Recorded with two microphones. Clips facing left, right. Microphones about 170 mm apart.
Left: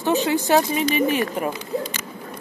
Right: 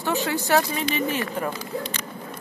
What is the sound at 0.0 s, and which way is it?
Speech, 20° left (ahead or behind).